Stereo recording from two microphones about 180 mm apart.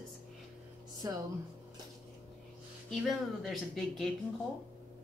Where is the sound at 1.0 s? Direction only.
20° right (ahead or behind).